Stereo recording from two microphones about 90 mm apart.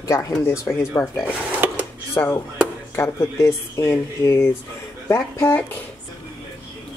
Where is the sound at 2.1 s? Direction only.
25° left (ahead or behind).